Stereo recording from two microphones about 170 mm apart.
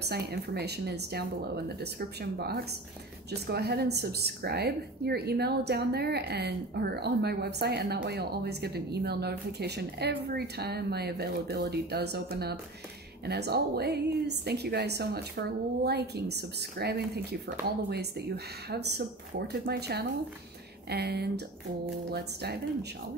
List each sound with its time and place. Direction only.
0.0 s a woman's voice: 70° right (ahead or behind)